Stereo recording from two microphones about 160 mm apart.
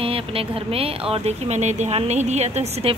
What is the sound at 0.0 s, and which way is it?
A woman's voice, 35° right (ahead or behind).